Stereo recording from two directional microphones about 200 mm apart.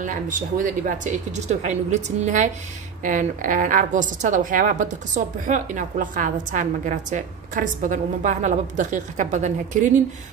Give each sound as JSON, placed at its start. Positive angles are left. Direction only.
{"t": 0.0, "sound": "a woman's voice", "side_deg": -40}